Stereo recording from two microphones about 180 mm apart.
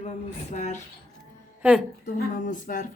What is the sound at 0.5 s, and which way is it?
Speech, 40° left (ahead or behind).